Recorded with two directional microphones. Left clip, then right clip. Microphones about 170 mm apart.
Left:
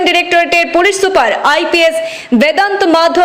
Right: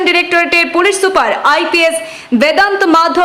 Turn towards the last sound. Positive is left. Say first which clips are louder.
# even
turn(degrees=10)  # may be behind; listen again after turning